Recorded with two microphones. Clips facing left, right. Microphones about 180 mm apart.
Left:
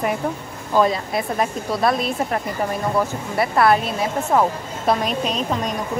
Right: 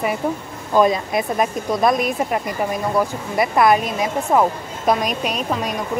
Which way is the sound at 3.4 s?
15° right (ahead or behind).